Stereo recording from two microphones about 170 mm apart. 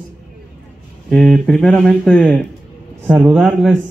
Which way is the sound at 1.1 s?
5° left (ahead or behind).